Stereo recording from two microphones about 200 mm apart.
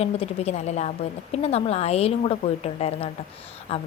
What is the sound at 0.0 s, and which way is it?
A woman's voice, 30° left (ahead or behind).